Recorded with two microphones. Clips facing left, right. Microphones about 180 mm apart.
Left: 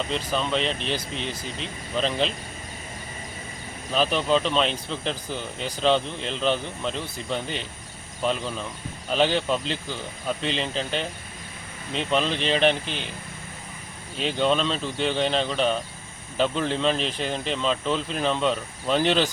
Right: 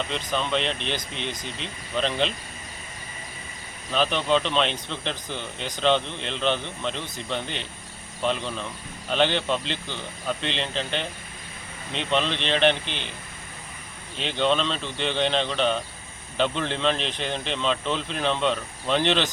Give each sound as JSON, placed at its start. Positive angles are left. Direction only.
{"t": 0.1, "sound": "speech", "side_deg": 0}
{"t": 3.9, "sound": "speech", "side_deg": 5}
{"t": 12.8, "sound": "speech", "side_deg": 40}
{"t": 14.2, "sound": "speech", "side_deg": 5}